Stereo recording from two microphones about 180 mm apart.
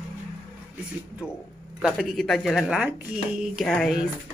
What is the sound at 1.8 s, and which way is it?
Speech, centre (ahead or behind).